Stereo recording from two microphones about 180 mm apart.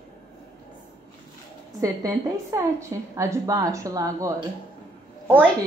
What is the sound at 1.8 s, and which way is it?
A woman's voice, 20° right (ahead or behind).